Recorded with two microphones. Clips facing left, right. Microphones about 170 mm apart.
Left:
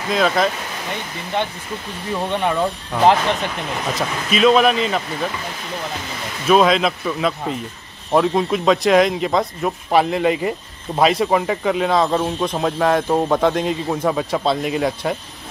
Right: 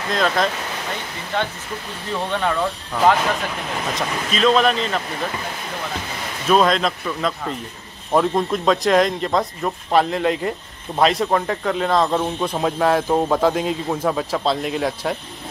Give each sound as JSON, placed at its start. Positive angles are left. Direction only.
{"t": 0.1, "sound": "a man's voice", "side_deg": 5}
{"t": 2.3, "sound": "speech", "side_deg": 15}
{"t": 6.4, "sound": "a man's voice", "side_deg": 5}